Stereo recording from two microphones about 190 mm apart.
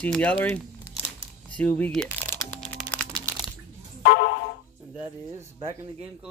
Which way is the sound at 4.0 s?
65° left (ahead or behind).